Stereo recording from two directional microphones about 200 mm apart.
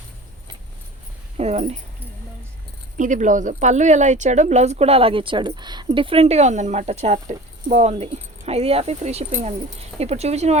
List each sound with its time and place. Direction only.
1.4 s speech: 35° right (ahead or behind)
3.0 s a woman's voice: 40° right (ahead or behind)